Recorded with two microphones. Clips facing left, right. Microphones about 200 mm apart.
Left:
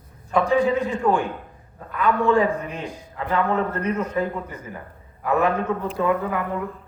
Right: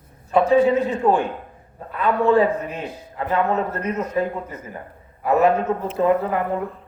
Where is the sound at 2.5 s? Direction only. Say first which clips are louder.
Right 2 dB; 5° right (ahead or behind).